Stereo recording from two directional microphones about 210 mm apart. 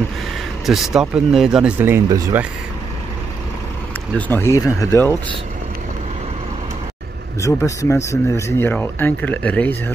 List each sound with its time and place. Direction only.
0.7 s speech: centre (ahead or behind)
4.1 s speech: 10° left (ahead or behind)
7.4 s speech: 15° left (ahead or behind)